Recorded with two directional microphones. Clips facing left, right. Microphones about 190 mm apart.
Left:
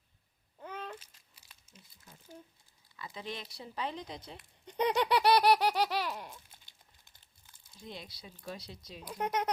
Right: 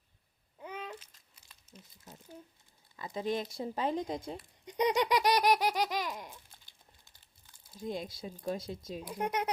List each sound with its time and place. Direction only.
0.6 s babbling: 10° right (ahead or behind)
2.9 s speech: 45° right (ahead or behind)
4.6 s laughter: 15° right (ahead or behind)
7.8 s speech: 45° right (ahead or behind)
9.0 s speech: 10° right (ahead or behind)